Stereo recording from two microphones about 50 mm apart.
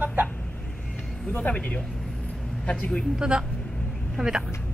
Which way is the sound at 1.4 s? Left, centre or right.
Left.